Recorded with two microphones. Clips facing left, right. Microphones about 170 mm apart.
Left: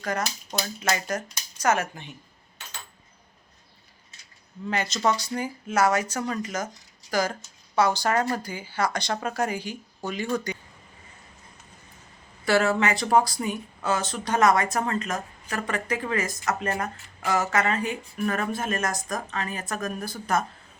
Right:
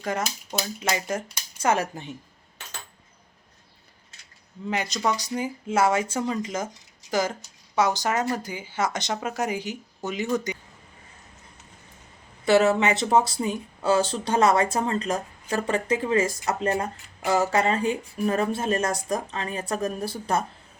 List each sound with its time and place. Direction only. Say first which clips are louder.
0.6 s speech: even; 15° right (ahead or behind)
1.6 s speech: right 1 dB; 30° right (ahead or behind)
4.7 s speech: left 1 dB; 15° right (ahead or behind)
12.5 s speech: right 3 dB; 20° right (ahead or behind)
16.6 s speech: right 7 dB; 20° right (ahead or behind)
17.2 s speech: right 2 dB; 30° right (ahead or behind)